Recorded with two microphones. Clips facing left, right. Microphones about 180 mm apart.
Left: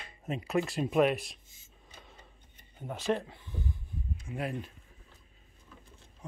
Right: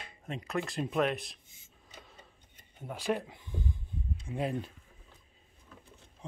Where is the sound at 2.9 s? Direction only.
10° right (ahead or behind).